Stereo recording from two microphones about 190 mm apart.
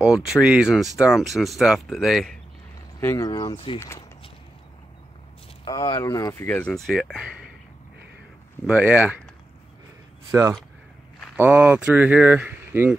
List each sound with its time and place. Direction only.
0.0 s speech: 5° right (ahead or behind)
3.0 s speech: 15° left (ahead or behind)
5.7 s speech: 20° left (ahead or behind); by 7.4 s centre (ahead or behind)
8.6 s speech: 5° right (ahead or behind)
11.3 s speech: 10° right (ahead or behind)